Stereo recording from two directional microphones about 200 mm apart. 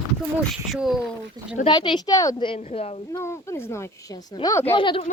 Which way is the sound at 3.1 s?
15° left (ahead or behind).